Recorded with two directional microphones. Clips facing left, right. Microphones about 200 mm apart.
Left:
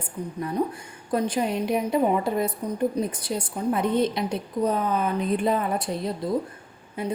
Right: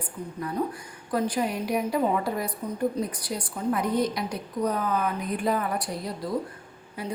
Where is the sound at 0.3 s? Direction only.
25° left (ahead or behind).